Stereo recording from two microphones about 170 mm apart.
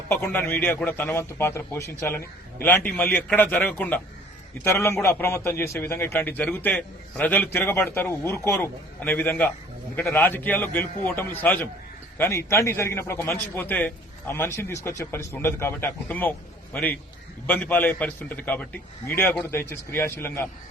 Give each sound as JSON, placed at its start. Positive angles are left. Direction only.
{"t": 0.1, "sound": "a man's voice", "side_deg": 15}